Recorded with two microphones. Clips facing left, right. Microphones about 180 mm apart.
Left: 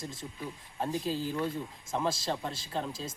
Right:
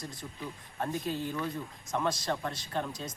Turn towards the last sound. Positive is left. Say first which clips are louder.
# even
turn(degrees=25)  # may be behind; listen again after turning